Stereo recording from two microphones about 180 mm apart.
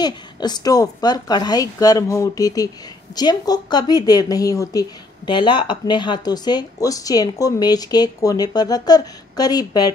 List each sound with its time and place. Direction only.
0.0 s speech: 25° left (ahead or behind)